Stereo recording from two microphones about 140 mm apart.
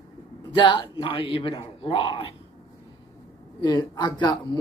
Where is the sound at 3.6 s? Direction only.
30° left (ahead or behind).